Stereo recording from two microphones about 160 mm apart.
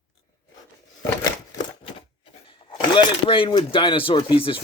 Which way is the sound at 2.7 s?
35° left (ahead or behind).